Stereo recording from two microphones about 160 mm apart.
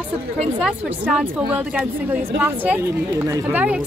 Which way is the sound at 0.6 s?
5° right (ahead or behind).